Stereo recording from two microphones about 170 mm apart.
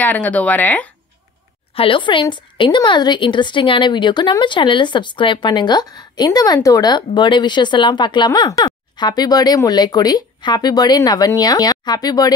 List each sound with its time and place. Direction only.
0.0 s speech: 10° left (ahead or behind)
1.8 s a woman's voice: 30° left (ahead or behind)